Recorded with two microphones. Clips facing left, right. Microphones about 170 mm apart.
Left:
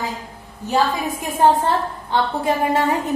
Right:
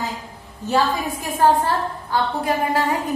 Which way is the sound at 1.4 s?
25° left (ahead or behind).